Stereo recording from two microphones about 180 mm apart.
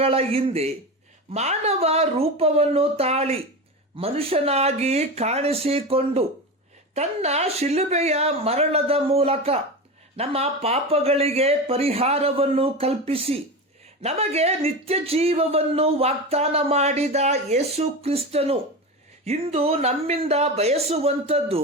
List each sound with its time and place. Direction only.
0.0 s speech: 35° right (ahead or behind)